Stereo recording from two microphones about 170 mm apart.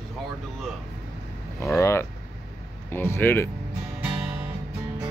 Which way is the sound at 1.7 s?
15° left (ahead or behind).